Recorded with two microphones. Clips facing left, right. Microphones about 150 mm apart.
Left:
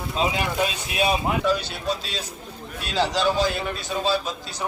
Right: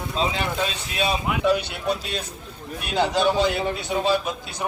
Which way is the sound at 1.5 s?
60° right (ahead or behind).